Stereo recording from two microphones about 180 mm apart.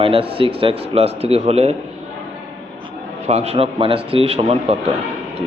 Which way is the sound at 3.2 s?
35° right (ahead or behind).